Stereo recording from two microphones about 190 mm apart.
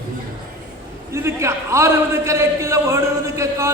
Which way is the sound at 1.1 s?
15° right (ahead or behind).